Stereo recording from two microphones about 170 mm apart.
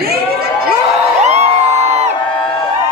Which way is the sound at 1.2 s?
40° right (ahead or behind).